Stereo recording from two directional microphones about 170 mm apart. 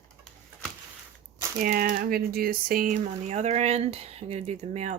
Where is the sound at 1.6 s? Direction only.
55° right (ahead or behind).